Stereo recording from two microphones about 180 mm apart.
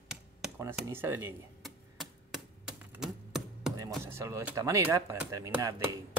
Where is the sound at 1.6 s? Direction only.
Centre (ahead or behind).